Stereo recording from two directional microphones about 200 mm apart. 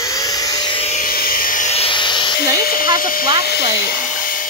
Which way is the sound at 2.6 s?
45° left (ahead or behind).